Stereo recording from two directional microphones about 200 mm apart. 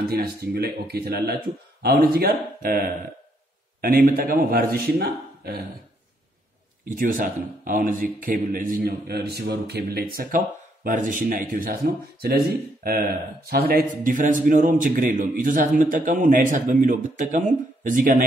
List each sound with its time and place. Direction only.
0.1 s speech: 50° right (ahead or behind)
6.9 s a man's voice: 40° right (ahead or behind)